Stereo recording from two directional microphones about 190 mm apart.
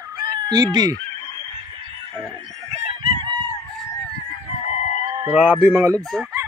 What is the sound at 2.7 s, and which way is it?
Fowl, 30° right (ahead or behind).